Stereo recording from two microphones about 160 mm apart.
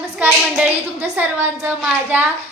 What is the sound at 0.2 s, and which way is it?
A woman's voice, 10° right (ahead or behind).